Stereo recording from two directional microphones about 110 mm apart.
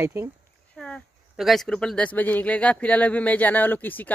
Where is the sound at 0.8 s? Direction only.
5° left (ahead or behind).